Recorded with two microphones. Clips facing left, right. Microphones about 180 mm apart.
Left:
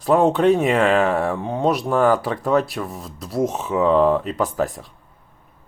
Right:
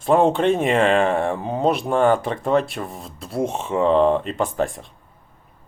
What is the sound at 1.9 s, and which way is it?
Speech, 20° right (ahead or behind).